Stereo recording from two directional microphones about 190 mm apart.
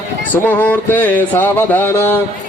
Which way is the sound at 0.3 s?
10° left (ahead or behind).